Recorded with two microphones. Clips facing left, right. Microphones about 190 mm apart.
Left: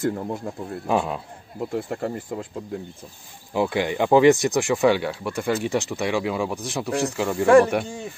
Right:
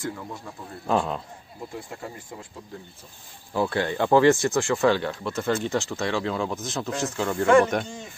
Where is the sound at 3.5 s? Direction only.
15° left (ahead or behind).